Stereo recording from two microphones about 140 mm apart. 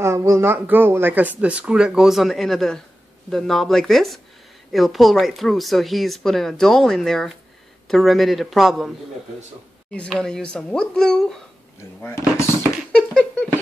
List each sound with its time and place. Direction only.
0.0 s speech: 20° right (ahead or behind); by 8.9 s centre (ahead or behind)
9.9 s speech: 5° left (ahead or behind)
12.0 s speech: 20° left (ahead or behind)
12.9 s a sound: 5° left (ahead or behind)